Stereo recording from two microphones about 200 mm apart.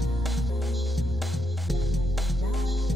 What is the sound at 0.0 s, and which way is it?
Music, centre (ahead or behind).